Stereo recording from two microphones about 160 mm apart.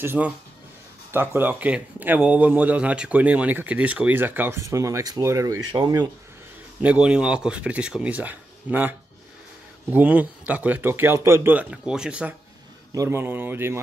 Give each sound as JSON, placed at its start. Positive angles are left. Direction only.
{"t": 0.0, "sound": "a man's voice", "side_deg": -10}
{"t": 6.8, "sound": "a man's voice", "side_deg": -5}
{"t": 12.9, "sound": "a man's voice", "side_deg": -20}